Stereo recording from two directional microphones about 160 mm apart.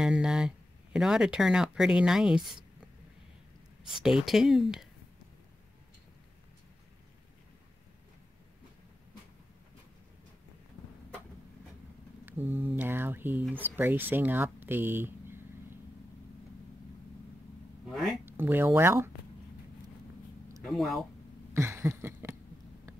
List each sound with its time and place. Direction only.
0.0 s speech: 5° right (ahead or behind)
3.8 s speech: 5° right (ahead or behind)
12.3 s speech: 15° right (ahead or behind)
18.2 s speech: 15° right (ahead or behind)
20.6 s speech: centre (ahead or behind)
21.5 s a sound: 15° right (ahead or behind)